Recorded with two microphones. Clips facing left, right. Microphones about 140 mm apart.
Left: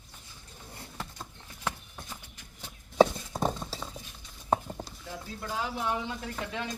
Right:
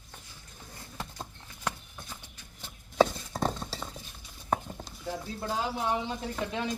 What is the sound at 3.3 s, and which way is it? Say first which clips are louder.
Clip-clop: left 1 dB; 10° left (ahead or behind).